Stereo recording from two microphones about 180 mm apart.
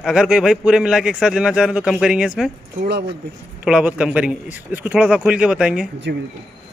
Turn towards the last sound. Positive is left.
turn(degrees=-70)  # may be behind; listen again after turning